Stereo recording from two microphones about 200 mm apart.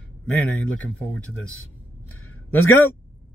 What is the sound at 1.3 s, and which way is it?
Speech, 90° left.